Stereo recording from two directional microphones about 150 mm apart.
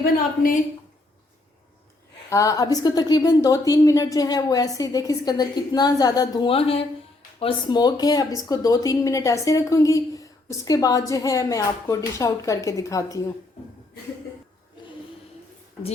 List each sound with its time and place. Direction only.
0.0 s a woman's voice: 70° left (ahead or behind)
2.3 s a woman's voice: 20° left (ahead or behind)
6.5 s a woman's voice: 40° left (ahead or behind); by 13.2 s 20° left (ahead or behind)